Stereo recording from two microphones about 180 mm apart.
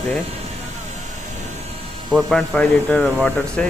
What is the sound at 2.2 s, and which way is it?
Speech, centre (ahead or behind).